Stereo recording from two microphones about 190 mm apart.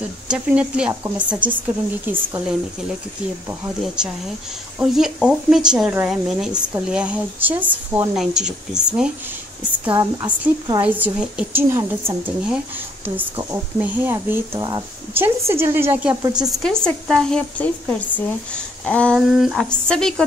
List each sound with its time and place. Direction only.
0.3 s a woman's voice: 5° right (ahead or behind)
9.8 s speech: 20° right (ahead or behind)
10.8 s speech: 5° right (ahead or behind)
16.4 s a woman's voice: 5° left (ahead or behind)